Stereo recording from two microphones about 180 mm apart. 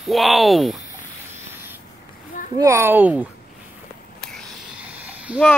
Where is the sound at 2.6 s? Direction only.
15° right (ahead or behind).